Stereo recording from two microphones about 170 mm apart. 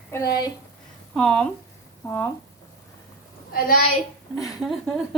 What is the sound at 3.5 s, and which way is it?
Speech, 55° left (ahead or behind).